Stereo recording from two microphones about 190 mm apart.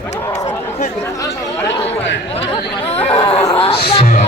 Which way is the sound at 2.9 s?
30° left (ahead or behind).